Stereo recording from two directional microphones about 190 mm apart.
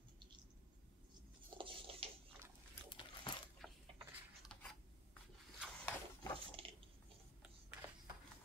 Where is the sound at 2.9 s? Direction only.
25° left (ahead or behind).